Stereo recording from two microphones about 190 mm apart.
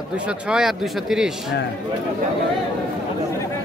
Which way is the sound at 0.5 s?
5° right (ahead or behind).